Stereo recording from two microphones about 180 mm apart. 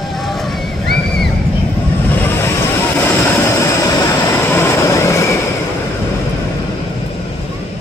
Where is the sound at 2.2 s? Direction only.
10° left (ahead or behind).